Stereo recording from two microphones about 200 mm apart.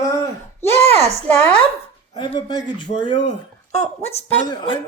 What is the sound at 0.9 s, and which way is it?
Speech, 35° right (ahead or behind).